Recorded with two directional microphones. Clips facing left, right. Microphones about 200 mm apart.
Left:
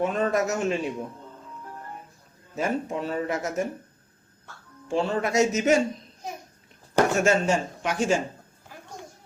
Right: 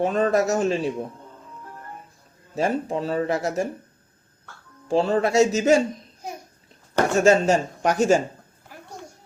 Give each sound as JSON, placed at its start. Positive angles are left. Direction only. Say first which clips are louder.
{"t": 0.0, "sound": "speech", "louder": "right 4 dB", "side_deg": -35}
{"t": 2.6, "sound": "speech", "louder": "right 3 dB", "side_deg": -35}
{"t": 4.9, "sound": "speech", "louder": "right 5 dB", "side_deg": -35}
{"t": 7.2, "sound": "speech", "louder": "right 5 dB", "side_deg": -35}